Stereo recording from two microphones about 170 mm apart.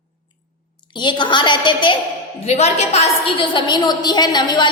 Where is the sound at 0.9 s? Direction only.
25° left (ahead or behind).